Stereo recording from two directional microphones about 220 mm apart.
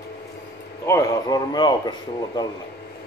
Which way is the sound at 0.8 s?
15° left (ahead or behind).